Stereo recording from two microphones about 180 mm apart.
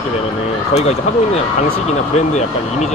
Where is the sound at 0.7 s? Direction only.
35° left (ahead or behind).